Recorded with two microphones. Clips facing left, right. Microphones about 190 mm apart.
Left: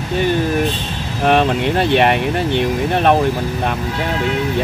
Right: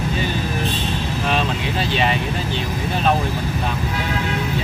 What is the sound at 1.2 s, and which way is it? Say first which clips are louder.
Speech: left 10 dB; 60° left (ahead or behind).